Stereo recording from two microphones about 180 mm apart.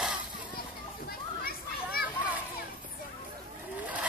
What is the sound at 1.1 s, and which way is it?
Children playing, 55° left (ahead or behind).